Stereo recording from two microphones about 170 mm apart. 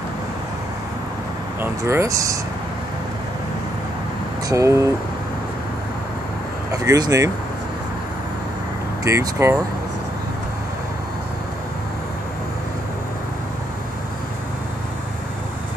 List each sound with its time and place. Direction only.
1.6 s speech: 15° right (ahead or behind)
4.5 s speech: 20° right (ahead or behind)
6.7 s speech: 20° right (ahead or behind)
9.0 s speech: 20° right (ahead or behind)